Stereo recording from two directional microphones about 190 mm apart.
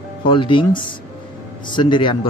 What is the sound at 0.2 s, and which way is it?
Speech, 25° left (ahead or behind).